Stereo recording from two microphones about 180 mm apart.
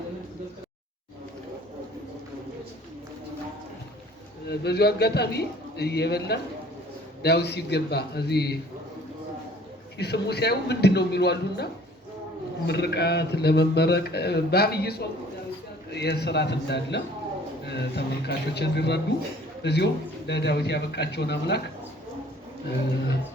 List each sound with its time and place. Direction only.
4.4 s speech: 65° left (ahead or behind)
10.0 s a man's voice: 65° left (ahead or behind)